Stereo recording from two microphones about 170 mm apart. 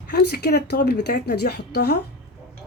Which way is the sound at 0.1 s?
70° left (ahead or behind).